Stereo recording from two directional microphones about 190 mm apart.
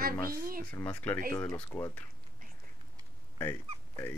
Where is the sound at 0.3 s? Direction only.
50° right (ahead or behind).